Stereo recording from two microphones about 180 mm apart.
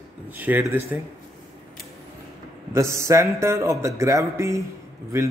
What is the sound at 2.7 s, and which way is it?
Speech, 15° right (ahead or behind).